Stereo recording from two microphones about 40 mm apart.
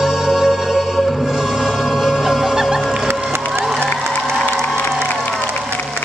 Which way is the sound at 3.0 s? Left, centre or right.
Right.